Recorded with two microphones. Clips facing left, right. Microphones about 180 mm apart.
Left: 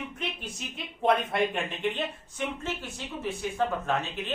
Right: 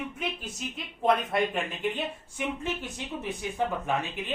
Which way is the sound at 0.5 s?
Centre (ahead or behind).